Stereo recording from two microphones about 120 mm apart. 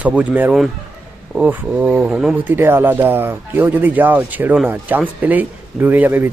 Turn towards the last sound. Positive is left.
turn(degrees=-15)  # may be behind; listen again after turning